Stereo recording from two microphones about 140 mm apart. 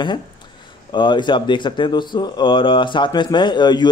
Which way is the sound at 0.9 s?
35° left (ahead or behind).